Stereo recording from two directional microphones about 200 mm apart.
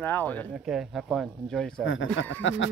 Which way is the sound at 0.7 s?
Centre (ahead or behind).